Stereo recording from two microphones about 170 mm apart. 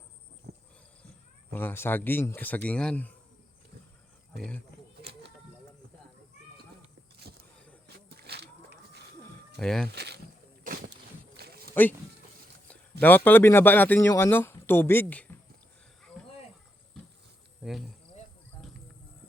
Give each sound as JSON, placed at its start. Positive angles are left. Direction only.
{"t": 0.5, "sound": "a sound", "side_deg": -75}
{"t": 1.5, "sound": "a man's voice", "side_deg": 15}
{"t": 7.3, "sound": "vehicle", "side_deg": -70}
{"t": 7.9, "sound": "a sound", "side_deg": -70}
{"t": 9.6, "sound": "speech", "side_deg": 5}
{"t": 9.9, "sound": "speech", "side_deg": -75}
{"t": 10.6, "sound": "boat", "side_deg": -55}
{"t": 11.3, "sound": "a sound", "side_deg": -65}
{"t": 11.7, "sound": "speech", "side_deg": 10}
{"t": 13.0, "sound": "a man's voice", "side_deg": 10}
{"t": 17.6, "sound": "speech", "side_deg": 0}